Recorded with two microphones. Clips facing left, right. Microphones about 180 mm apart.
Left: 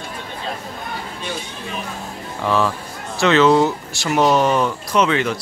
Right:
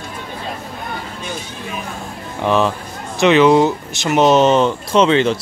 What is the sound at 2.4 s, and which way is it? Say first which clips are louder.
Speech: right 3 dB; 20° right (ahead or behind).